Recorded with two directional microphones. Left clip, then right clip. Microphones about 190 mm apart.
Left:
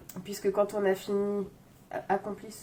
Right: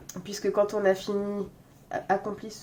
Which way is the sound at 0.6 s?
40° right (ahead or behind).